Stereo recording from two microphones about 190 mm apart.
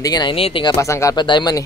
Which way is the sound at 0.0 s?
20° left (ahead or behind).